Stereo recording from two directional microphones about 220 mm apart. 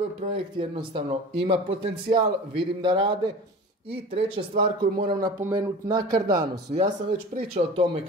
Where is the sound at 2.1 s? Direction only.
35° right (ahead or behind).